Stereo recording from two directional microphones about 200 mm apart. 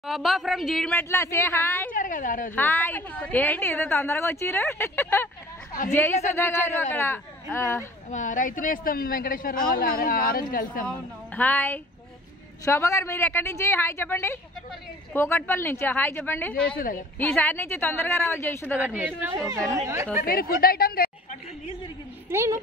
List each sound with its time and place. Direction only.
0.0 s speech: centre (ahead or behind)
0.9 s a woman's voice: 15° left (ahead or behind)
1.9 s speech: 40° left (ahead or behind)
2.5 s a woman's voice: 10° left (ahead or behind)
8.1 s a woman's voice: 40° left (ahead or behind)
10.9 s a woman's voice: 10° left (ahead or behind)
16.7 s a woman's voice: 45° left (ahead or behind)
17.2 s a woman's voice: 10° left (ahead or behind)
18.8 s a woman's voice: 10° right (ahead or behind)
20.2 s a woman's voice: 50° left (ahead or behind)
22.3 s a woman's voice: 15° right (ahead or behind)